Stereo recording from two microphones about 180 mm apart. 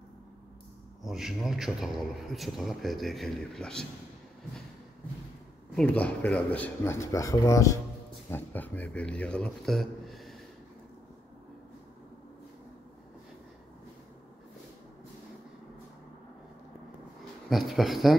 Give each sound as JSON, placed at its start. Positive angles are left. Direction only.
{"t": 1.0, "sound": "a man's voice", "side_deg": 0}
{"t": 5.8, "sound": "speech", "side_deg": 5}
{"t": 17.5, "sound": "speech", "side_deg": 0}